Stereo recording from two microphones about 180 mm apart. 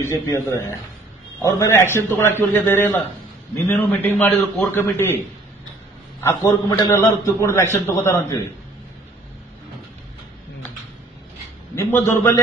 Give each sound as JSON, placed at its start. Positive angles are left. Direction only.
{"t": 0.0, "sound": "a man's voice", "side_deg": 15}
{"t": 6.2, "sound": "a man's voice", "side_deg": 15}
{"t": 11.7, "sound": "a man's voice", "side_deg": 15}